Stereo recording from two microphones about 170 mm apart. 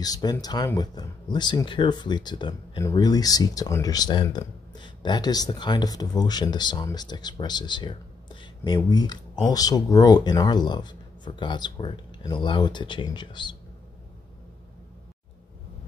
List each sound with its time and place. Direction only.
0.0 s speech: 25° left (ahead or behind)